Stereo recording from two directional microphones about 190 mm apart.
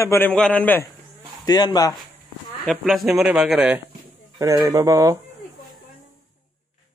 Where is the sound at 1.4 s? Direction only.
20° left (ahead or behind).